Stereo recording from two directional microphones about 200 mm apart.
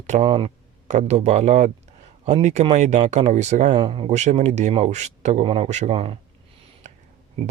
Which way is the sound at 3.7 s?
25° right (ahead or behind).